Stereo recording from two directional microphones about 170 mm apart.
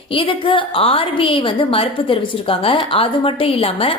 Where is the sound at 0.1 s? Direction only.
30° left (ahead or behind).